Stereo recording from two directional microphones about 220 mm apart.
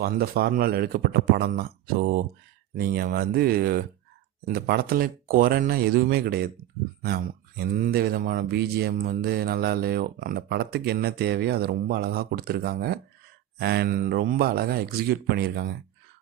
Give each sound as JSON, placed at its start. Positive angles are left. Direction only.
{"t": 0.0, "sound": "speech", "side_deg": -45}